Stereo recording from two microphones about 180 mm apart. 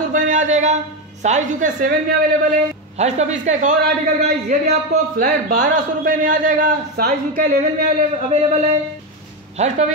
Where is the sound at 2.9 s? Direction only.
40° right (ahead or behind).